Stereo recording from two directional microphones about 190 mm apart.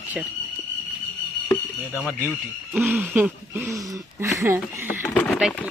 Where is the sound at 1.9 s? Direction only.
5° right (ahead or behind).